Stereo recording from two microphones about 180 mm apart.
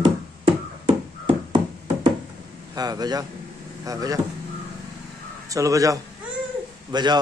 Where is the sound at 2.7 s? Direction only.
20° right (ahead or behind).